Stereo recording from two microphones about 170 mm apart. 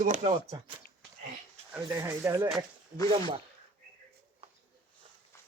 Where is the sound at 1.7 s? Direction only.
15° right (ahead or behind).